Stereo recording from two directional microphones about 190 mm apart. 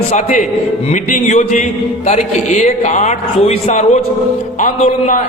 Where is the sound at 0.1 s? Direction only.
40° left (ahead or behind).